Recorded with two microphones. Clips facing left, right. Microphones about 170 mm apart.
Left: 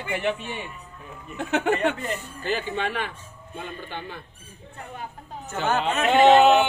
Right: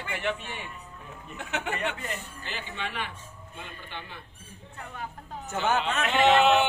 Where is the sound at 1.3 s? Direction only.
40° left (ahead or behind).